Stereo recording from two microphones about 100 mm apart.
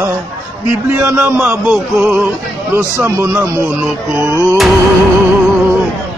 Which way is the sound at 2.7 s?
30° right (ahead or behind).